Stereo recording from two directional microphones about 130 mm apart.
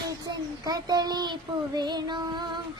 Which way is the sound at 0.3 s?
30° right (ahead or behind).